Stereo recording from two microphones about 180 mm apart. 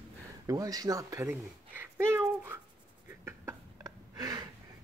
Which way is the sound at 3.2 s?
15° right (ahead or behind).